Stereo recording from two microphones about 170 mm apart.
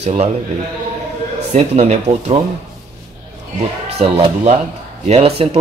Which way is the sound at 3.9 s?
35° right (ahead or behind).